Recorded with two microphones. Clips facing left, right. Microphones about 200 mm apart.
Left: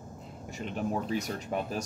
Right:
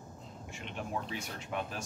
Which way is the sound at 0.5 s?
40° left (ahead or behind).